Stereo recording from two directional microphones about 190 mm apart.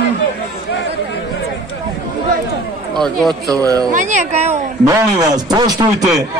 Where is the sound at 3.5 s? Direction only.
20° right (ahead or behind).